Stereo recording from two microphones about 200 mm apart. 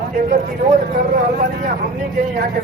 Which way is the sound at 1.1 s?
40° right (ahead or behind).